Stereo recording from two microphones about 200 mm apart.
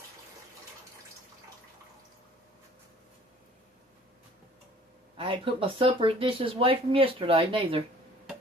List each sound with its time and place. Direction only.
5.1 s speech: 25° right (ahead or behind)